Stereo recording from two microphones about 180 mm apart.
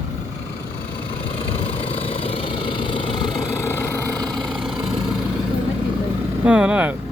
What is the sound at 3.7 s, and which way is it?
Vehicle, 10° left (ahead or behind).